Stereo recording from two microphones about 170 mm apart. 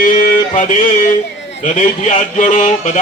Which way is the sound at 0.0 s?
50° left (ahead or behind).